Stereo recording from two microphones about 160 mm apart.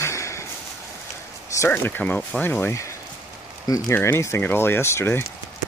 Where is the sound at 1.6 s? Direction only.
15° left (ahead or behind).